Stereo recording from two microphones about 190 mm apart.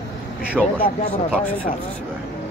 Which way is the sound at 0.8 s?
30° left (ahead or behind).